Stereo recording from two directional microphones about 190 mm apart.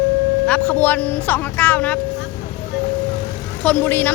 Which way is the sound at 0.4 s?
5° left (ahead or behind).